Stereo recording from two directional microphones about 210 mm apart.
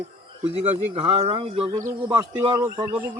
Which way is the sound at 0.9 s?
25° right (ahead or behind).